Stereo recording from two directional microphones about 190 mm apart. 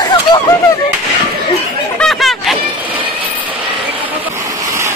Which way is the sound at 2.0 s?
Centre (ahead or behind).